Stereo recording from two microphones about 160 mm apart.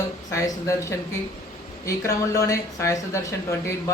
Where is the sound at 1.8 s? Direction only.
20° left (ahead or behind).